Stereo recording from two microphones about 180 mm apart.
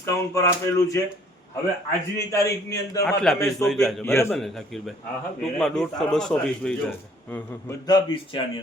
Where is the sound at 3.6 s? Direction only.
Centre (ahead or behind).